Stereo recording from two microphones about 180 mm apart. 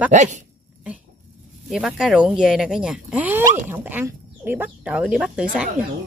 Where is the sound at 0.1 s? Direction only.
40° right (ahead or behind).